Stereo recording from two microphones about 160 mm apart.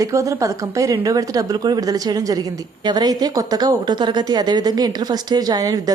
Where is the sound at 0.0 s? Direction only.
20° right (ahead or behind).